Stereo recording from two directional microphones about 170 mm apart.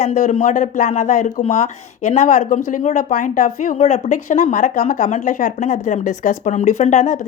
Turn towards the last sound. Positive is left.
turn(degrees=45)  # may be behind; listen again after turning